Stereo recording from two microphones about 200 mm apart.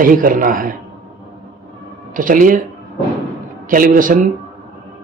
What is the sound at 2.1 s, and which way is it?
Speech, 40° right (ahead or behind).